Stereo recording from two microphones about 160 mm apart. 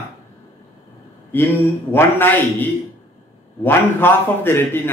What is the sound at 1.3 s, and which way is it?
Speech, 15° left (ahead or behind).